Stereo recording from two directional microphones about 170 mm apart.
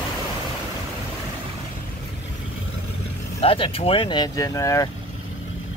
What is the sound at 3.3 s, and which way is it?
Speech, 30° left (ahead or behind).